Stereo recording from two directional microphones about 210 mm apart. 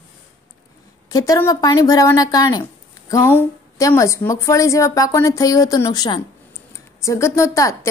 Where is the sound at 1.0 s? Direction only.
15° left (ahead or behind).